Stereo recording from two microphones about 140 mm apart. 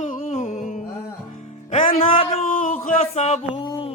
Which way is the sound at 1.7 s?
50° left (ahead or behind).